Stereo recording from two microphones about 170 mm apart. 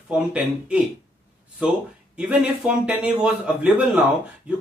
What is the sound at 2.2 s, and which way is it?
A man's voice, 5° right (ahead or behind).